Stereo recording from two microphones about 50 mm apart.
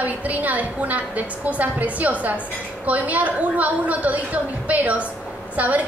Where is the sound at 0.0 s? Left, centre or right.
Right.